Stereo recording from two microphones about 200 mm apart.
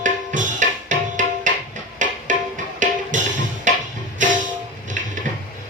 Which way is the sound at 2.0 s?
40° right (ahead or behind).